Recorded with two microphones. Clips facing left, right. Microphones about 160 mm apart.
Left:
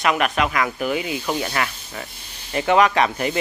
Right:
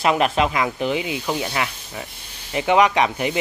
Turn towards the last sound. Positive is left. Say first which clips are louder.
# even
turn(degrees=-15)  # may be behind; listen again after turning